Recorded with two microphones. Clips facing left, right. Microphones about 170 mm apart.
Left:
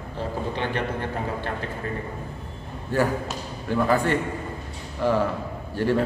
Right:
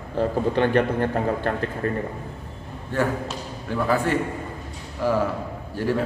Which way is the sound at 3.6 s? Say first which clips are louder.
Left 1 dB; centre (ahead or behind).